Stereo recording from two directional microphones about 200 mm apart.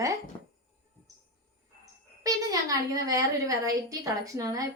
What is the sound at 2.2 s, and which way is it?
A woman's voice, 15° right (ahead or behind).